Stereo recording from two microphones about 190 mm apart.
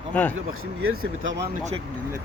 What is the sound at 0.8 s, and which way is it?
Speech, 90° right.